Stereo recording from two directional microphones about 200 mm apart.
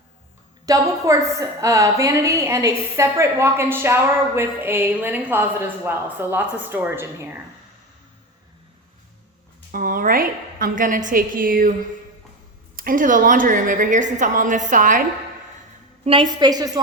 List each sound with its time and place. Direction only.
0.6 s a woman's voice: 15° right (ahead or behind)
9.7 s a woman's voice: 45° right (ahead or behind)
12.7 s a woman's voice: 45° right (ahead or behind)
16.0 s a woman's voice: 25° right (ahead or behind)